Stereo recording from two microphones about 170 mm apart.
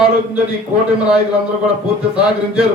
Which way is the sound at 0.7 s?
40° right (ahead or behind).